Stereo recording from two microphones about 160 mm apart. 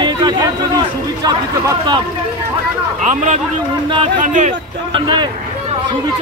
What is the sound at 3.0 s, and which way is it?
A man's voice, 50° right (ahead or behind).